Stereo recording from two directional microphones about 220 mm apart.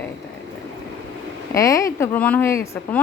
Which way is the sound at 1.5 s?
15° left (ahead or behind).